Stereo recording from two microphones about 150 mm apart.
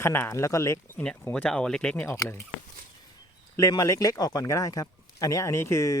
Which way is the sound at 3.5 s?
25° left (ahead or behind).